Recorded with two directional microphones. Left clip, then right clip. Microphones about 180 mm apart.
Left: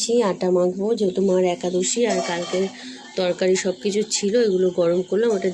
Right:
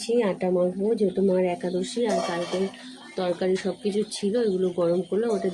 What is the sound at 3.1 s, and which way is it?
Speech, 5° left (ahead or behind).